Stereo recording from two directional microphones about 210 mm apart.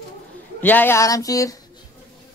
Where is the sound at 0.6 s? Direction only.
10° left (ahead or behind).